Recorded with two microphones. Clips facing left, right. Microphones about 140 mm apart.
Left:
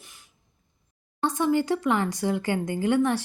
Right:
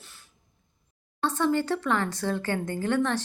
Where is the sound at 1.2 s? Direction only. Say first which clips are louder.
Left 2 dB; 15° left (ahead or behind).